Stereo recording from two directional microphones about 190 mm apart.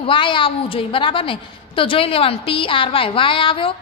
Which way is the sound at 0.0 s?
25° left (ahead or behind).